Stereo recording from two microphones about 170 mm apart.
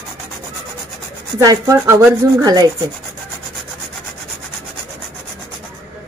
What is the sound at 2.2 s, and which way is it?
Rub, 20° right (ahead or behind).